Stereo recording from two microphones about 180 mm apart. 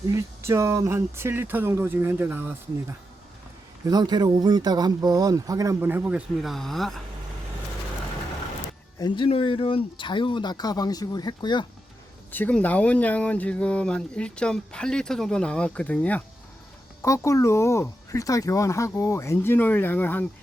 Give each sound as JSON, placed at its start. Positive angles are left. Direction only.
{"t": 0.0, "sound": "speech", "side_deg": -15}
{"t": 3.8, "sound": "speech", "side_deg": -20}
{"t": 9.0, "sound": "speech", "side_deg": 25}
{"t": 12.3, "sound": "speech", "side_deg": 10}